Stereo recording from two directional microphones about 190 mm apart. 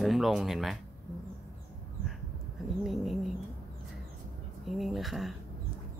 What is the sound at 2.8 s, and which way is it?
Speech, centre (ahead or behind).